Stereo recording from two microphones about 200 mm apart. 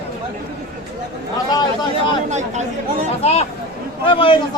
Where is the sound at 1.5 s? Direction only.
20° left (ahead or behind).